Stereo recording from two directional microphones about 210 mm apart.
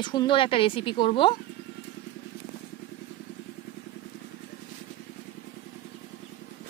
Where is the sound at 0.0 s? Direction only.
20° left (ahead or behind).